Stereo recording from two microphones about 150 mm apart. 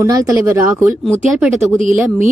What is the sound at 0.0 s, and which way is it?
Speech, 20° right (ahead or behind).